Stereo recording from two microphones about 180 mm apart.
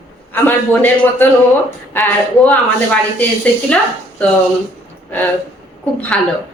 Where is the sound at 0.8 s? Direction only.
10° left (ahead or behind).